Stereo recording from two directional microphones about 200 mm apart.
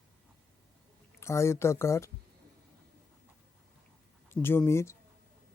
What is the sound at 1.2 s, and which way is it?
Speech, 15° left (ahead or behind).